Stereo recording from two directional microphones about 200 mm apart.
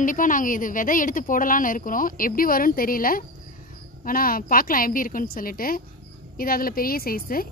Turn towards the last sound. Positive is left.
turn(degrees=45)  # may be behind; listen again after turning